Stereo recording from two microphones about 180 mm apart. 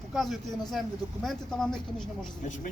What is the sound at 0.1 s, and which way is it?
Speech, centre (ahead or behind).